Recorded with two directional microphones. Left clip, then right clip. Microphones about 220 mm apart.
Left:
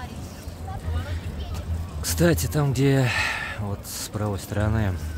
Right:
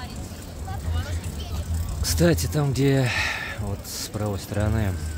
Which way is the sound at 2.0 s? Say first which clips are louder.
Even; 5° left (ahead or behind).